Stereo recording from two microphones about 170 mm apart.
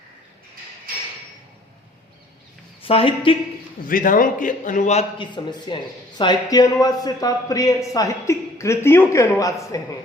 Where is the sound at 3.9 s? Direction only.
50° left (ahead or behind).